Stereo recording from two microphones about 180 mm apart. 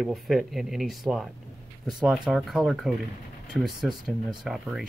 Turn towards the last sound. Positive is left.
turn(degrees=0)  # may be behind; listen again after turning